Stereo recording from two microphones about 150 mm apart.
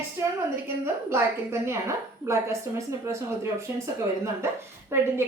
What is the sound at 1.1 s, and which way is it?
A woman's voice, 15° right (ahead or behind).